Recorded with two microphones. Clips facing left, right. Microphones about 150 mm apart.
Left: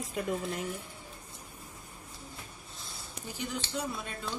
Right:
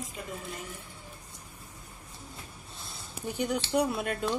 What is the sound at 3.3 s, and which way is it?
Speech, 60° right (ahead or behind).